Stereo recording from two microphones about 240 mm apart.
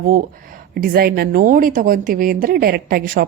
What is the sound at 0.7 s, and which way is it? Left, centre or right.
A woman's voice, right.